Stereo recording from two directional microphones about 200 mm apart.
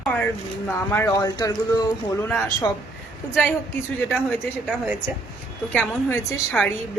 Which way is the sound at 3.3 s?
5° left (ahead or behind).